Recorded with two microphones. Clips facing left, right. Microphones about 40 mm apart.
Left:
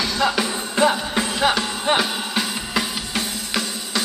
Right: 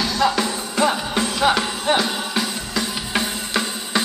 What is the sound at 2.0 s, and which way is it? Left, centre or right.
Music, centre.